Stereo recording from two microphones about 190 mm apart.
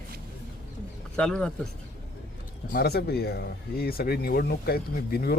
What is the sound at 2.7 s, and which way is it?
Speech, 55° left (ahead or behind).